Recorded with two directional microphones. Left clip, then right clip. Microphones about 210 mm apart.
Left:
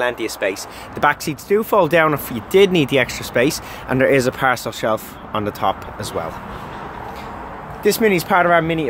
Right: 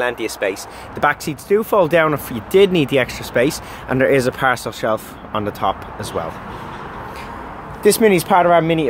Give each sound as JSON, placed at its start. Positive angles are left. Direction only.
{"t": 0.0, "sound": "speech", "side_deg": 0}
{"t": 7.8, "sound": "speech", "side_deg": -15}